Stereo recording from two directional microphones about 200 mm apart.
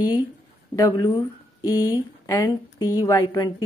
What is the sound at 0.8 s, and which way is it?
Speech, 20° left (ahead or behind).